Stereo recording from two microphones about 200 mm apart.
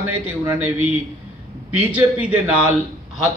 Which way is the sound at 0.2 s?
5° right (ahead or behind).